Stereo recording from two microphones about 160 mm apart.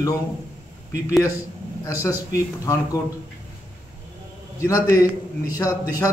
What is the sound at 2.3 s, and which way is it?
Speech, 20° left (ahead or behind).